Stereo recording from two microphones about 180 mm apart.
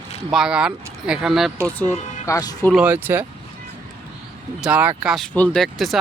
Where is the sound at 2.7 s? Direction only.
10° right (ahead or behind).